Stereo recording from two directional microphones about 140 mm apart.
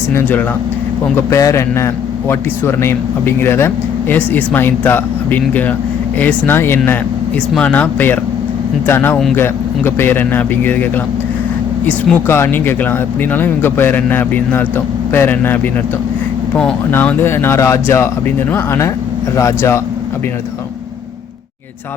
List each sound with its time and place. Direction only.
0.1 s a man's voice: 15° left (ahead or behind)
11.9 s speech: 15° left (ahead or behind)
16.9 s a man's voice: 15° left (ahead or behind)